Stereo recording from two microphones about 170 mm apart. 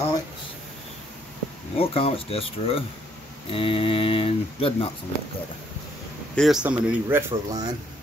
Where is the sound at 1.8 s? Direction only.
35° left (ahead or behind).